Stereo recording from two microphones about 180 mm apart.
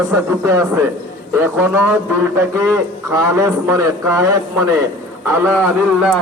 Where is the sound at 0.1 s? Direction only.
15° right (ahead or behind).